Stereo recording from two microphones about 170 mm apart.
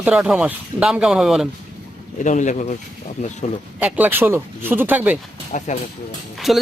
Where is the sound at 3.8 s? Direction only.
10° right (ahead or behind).